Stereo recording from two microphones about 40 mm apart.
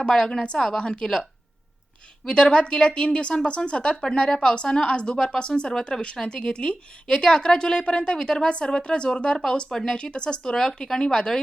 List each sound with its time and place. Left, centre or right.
0.0 s a woman's voice: centre